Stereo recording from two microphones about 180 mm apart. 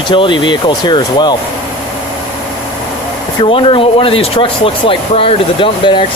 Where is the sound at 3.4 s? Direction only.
30° left (ahead or behind).